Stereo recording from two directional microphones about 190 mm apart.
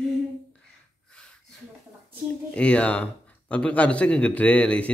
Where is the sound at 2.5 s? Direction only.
5° left (ahead or behind).